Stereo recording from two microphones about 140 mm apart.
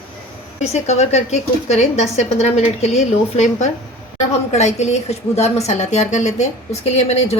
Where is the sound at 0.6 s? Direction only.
50° left (ahead or behind).